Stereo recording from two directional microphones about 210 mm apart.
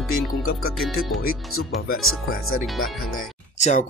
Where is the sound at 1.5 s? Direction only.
85° left.